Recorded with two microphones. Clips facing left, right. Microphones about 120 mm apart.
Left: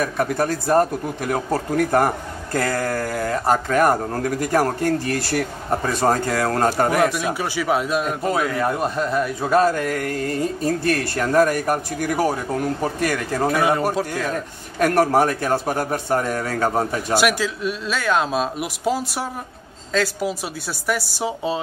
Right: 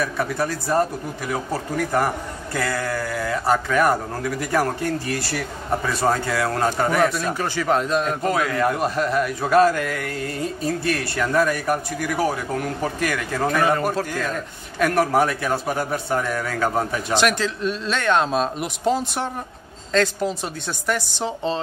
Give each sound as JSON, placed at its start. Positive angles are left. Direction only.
{"t": 0.0, "sound": "speech", "side_deg": 45}
{"t": 6.9, "sound": "a man's voice", "side_deg": 10}
{"t": 9.2, "sound": "speech", "side_deg": 25}
{"t": 13.5, "sound": "a man's voice", "side_deg": 15}
{"t": 14.8, "sound": "speech", "side_deg": 40}
{"t": 17.1, "sound": "a man's voice", "side_deg": 10}